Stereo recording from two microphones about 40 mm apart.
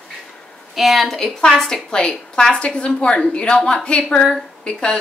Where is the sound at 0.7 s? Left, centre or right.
Centre.